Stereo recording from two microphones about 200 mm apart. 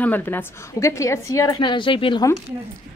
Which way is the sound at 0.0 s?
10° left (ahead or behind).